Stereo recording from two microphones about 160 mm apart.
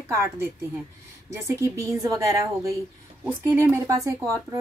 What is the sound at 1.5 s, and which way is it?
A woman's voice, 20° right (ahead or behind).